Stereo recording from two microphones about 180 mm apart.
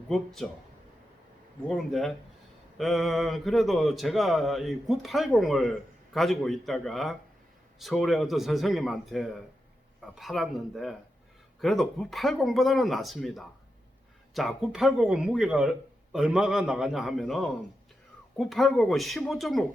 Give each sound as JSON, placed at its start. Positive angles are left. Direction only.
{"t": 0.1, "sound": "speech", "side_deg": 5}
{"t": 1.6, "sound": "speech", "side_deg": 0}